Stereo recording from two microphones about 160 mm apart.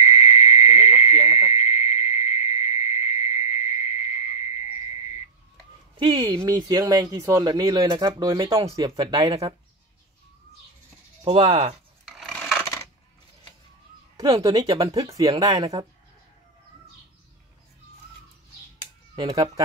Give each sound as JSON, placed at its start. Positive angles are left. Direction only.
{"t": 0.0, "sound": "insect", "side_deg": 40}
{"t": 1.1, "sound": "frog", "side_deg": -15}
{"t": 1.5, "sound": "frog", "side_deg": 40}
{"t": 5.9, "sound": "speech", "side_deg": -25}
{"t": 11.2, "sound": "speech", "side_deg": -40}
{"t": 12.0, "sound": "filing", "side_deg": 0}
{"t": 14.1, "sound": "speech", "side_deg": -20}
{"t": 19.1, "sound": "speech", "side_deg": -20}